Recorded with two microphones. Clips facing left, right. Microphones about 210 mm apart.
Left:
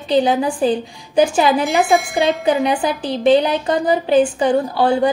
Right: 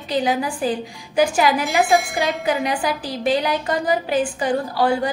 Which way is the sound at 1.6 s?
Centre (ahead or behind).